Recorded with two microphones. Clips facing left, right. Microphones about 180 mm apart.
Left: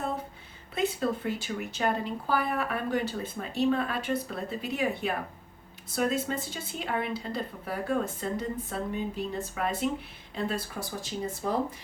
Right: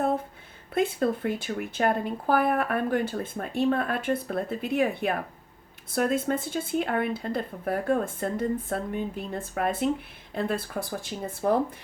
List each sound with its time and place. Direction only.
0.7 s speech: 50° right (ahead or behind)